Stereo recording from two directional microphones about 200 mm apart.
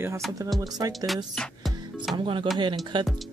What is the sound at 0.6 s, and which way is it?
Speech, 20° right (ahead or behind).